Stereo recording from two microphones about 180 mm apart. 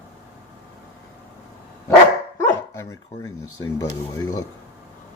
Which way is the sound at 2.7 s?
15° left (ahead or behind).